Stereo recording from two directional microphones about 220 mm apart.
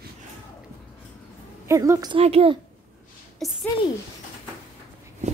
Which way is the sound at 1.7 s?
15° right (ahead or behind).